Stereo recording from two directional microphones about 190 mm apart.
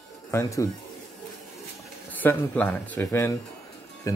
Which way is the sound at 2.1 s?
10° left (ahead or behind).